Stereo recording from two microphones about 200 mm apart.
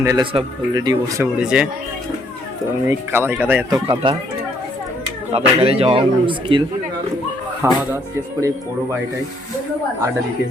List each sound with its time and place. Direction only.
0.0 s a man's voice: 15° right (ahead or behind)
1.4 s speech: 5° right (ahead or behind)
2.8 s speech: 10° right (ahead or behind)
3.8 s a man's voice: 25° right (ahead or behind)
5.3 s a man's voice: 30° right (ahead or behind)
7.6 s speech: 15° right (ahead or behind)